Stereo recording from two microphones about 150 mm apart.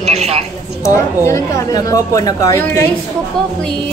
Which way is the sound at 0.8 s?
20° left (ahead or behind).